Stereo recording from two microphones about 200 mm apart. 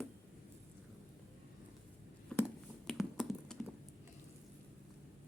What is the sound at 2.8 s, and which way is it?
Computer keyboard, centre (ahead or behind).